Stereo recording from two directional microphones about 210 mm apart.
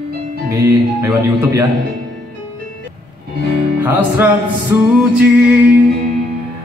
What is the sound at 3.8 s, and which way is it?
Music, 10° right (ahead or behind).